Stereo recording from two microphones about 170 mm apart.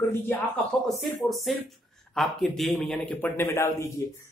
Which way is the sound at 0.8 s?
Centre (ahead or behind).